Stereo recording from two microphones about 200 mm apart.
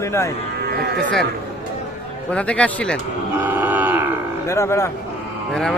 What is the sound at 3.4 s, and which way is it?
Grunt, 10° right (ahead or behind).